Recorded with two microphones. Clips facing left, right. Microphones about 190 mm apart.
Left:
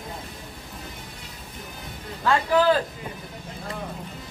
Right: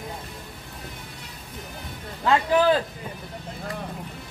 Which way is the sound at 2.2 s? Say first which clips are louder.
Right 1 dB; 20° right (ahead or behind).